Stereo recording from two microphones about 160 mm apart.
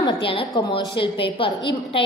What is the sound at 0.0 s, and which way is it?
A woman's voice, 35° left (ahead or behind).